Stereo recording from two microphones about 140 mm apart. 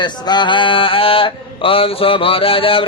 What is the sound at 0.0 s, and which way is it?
Mantra, 35° left (ahead or behind).